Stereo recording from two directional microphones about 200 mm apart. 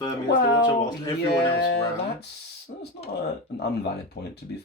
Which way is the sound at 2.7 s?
40° left (ahead or behind).